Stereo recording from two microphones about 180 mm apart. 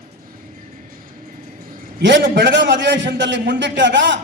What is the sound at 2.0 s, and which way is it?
A man's voice, 85° right.